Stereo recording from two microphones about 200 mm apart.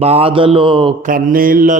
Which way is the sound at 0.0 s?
30° right (ahead or behind).